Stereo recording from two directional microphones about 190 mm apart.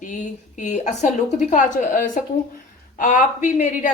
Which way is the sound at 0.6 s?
40° left (ahead or behind).